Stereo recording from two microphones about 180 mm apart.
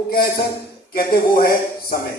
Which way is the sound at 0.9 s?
55° left (ahead or behind).